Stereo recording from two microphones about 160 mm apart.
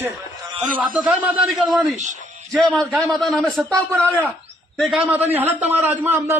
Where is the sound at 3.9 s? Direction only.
10° left (ahead or behind).